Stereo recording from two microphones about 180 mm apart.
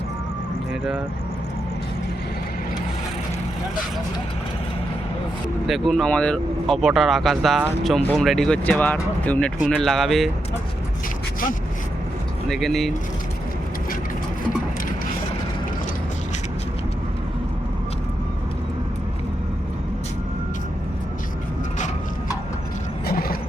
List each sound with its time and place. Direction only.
5.6 s speech: centre (ahead or behind)
12.5 s speech: centre (ahead or behind)
23.0 s vehicle: 55° left (ahead or behind)